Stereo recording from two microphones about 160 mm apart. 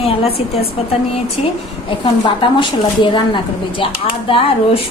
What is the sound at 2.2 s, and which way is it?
A woman's voice, 30° left (ahead or behind).